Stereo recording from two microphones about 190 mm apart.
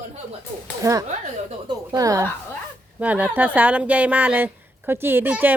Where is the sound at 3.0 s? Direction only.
10° right (ahead or behind).